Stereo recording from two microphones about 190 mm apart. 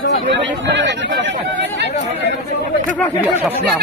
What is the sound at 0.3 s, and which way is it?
Speech, 70° right (ahead or behind).